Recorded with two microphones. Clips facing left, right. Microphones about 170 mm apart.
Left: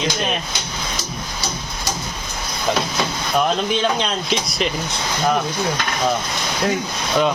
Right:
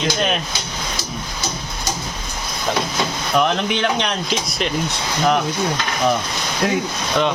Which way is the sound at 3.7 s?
70° right (ahead or behind).